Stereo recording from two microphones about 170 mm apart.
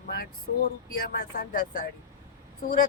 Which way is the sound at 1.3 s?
50° left (ahead or behind).